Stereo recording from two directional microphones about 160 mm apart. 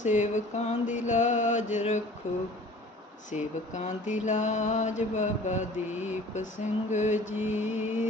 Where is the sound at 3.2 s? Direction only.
50° left (ahead or behind).